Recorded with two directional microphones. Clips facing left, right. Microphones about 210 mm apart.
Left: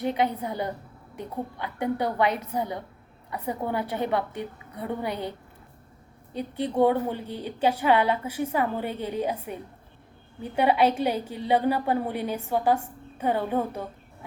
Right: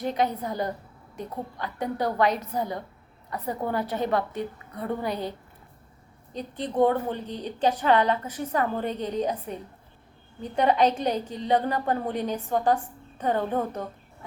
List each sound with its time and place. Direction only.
0.0 s a woman's voice: 10° left (ahead or behind)
1.6 s a woman's voice: 10° left (ahead or behind)
6.3 s a woman's voice: 10° left (ahead or behind)